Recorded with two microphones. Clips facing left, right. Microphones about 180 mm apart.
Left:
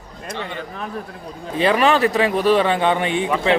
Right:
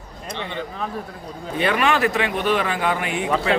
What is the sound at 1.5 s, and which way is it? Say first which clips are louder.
A man's voice: left 4 dB; 30° left (ahead or behind).